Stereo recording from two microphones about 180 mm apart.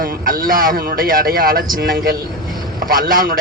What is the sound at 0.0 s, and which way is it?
A man's voice, 55° right (ahead or behind).